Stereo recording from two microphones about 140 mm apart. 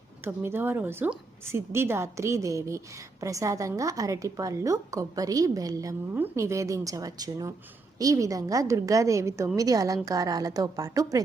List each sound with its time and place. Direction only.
0.3 s a woman's voice: 15° right (ahead or behind)